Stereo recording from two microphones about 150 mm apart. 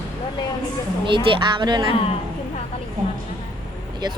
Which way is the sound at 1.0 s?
35° right (ahead or behind).